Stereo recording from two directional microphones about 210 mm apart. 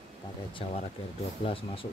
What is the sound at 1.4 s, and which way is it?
Speech, 25° left (ahead or behind).